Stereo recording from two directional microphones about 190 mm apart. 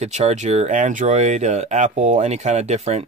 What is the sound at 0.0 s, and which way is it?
Speech, 35° right (ahead or behind).